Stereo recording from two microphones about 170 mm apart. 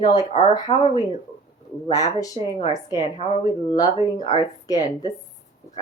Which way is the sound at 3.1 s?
35° left (ahead or behind).